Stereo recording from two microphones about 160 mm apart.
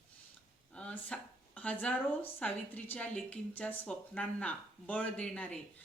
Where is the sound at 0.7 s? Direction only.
5° left (ahead or behind).